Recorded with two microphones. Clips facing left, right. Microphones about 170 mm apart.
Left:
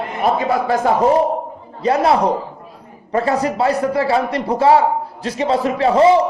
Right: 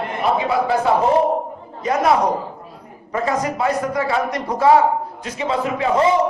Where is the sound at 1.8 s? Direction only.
30° left (ahead or behind).